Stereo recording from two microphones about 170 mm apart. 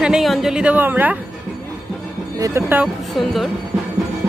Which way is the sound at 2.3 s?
15° right (ahead or behind).